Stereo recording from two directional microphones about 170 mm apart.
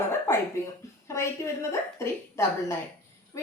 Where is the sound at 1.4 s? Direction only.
20° left (ahead or behind).